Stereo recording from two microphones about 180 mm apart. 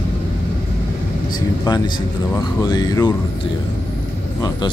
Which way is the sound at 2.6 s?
20° left (ahead or behind).